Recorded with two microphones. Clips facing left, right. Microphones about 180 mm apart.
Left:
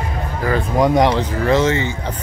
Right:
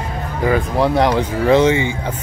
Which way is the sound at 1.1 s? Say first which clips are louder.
Right 2 dB; 10° right (ahead or behind).